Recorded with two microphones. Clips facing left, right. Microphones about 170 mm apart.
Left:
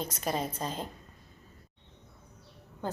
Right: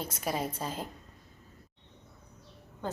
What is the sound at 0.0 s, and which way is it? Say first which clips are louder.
Speech: left 1 dB; 10° right (ahead or behind).